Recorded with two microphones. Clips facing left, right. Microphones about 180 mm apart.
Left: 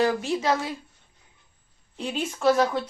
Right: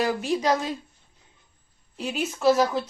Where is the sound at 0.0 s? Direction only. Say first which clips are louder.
Left 1 dB; 10° right (ahead or behind).